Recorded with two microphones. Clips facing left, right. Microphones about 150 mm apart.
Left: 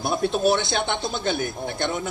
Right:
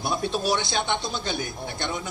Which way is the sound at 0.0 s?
55° left (ahead or behind).